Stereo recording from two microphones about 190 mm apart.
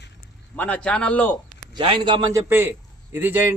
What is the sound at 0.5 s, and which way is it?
Speech, 5° left (ahead or behind).